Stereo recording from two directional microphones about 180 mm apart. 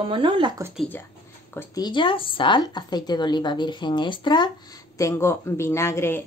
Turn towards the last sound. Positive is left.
turn(degrees=15)  # may be behind; listen again after turning